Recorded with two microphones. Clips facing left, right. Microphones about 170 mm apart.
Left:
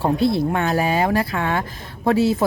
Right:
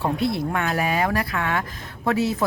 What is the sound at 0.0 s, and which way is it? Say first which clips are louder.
A woman's voice: left 5 dB; 30° left (ahead or behind).